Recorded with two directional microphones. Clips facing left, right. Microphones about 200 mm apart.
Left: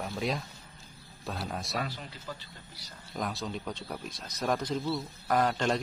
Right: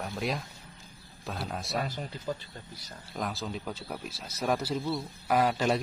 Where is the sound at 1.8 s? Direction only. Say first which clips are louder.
Right 5 dB; 45° right (ahead or behind).